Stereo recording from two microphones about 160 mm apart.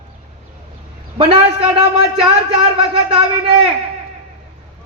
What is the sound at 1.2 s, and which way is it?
A man's voice, 35° right (ahead or behind).